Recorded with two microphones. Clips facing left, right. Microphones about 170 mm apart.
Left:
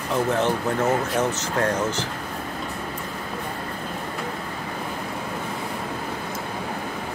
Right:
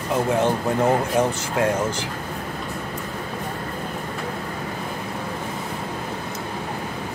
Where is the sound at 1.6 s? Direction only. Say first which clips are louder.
Right 2 dB; 10° right (ahead or behind).